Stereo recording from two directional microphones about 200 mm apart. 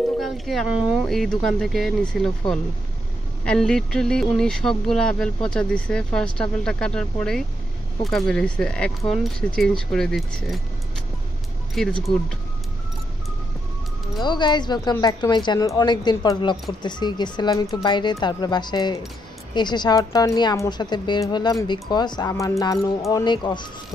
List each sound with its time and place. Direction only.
0.2 s speech: centre (ahead or behind)
3.4 s speech: 5° left (ahead or behind)
11.7 s speech: centre (ahead or behind)
14.2 s speech: 20° left (ahead or behind)